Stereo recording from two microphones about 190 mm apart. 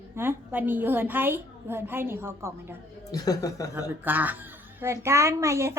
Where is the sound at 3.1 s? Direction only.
20° left (ahead or behind).